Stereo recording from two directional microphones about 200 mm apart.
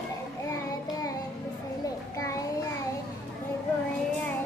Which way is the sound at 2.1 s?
15° left (ahead or behind).